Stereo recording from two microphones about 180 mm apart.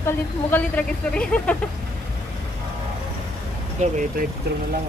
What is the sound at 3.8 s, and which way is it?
Vehicle, 40° right (ahead or behind).